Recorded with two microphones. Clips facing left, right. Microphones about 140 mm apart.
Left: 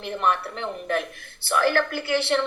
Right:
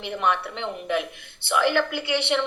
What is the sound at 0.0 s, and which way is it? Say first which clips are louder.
A woman's voice: even; 5° right (ahead or behind).